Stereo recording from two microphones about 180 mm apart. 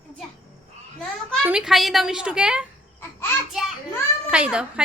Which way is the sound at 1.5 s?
5° right (ahead or behind).